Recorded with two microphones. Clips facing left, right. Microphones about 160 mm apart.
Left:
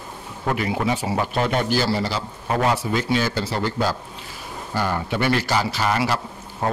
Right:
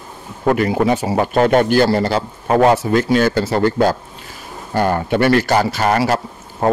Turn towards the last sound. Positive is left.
turn(degrees=-45)  # may be behind; listen again after turning